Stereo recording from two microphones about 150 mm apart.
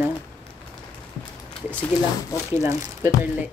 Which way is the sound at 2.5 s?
20° right (ahead or behind).